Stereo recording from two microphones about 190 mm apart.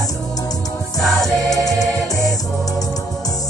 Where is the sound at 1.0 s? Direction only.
Centre (ahead or behind).